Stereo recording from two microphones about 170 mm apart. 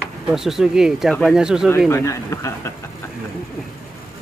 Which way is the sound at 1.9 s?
15° left (ahead or behind).